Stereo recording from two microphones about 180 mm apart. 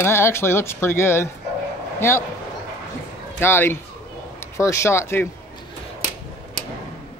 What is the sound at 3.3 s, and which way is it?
Speech, 10° left (ahead or behind).